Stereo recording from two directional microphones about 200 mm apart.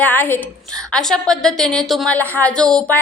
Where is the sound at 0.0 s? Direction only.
10° left (ahead or behind).